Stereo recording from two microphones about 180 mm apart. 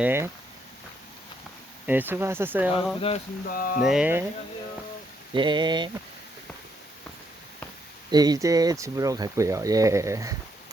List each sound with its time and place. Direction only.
0.0 s speech: 15° right (ahead or behind)
1.9 s speech: 10° right (ahead or behind)
3.4 s speech: 55° left (ahead or behind)
3.8 s speech: 5° right (ahead or behind)
5.3 s a sound: 25° right (ahead or behind)
8.1 s speech: 20° right (ahead or behind)